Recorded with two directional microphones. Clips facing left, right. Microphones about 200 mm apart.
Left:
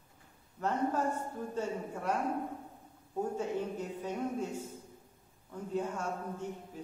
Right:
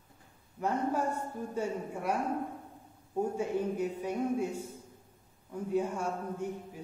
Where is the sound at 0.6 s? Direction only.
10° right (ahead or behind).